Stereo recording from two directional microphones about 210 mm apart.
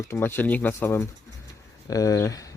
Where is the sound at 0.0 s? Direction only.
10° left (ahead or behind).